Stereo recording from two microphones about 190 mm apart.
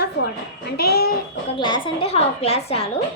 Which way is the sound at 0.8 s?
55° left (ahead or behind).